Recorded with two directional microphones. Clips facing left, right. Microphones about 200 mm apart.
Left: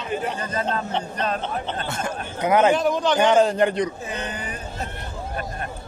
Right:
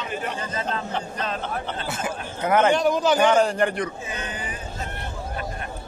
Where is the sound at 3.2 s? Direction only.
20° left (ahead or behind).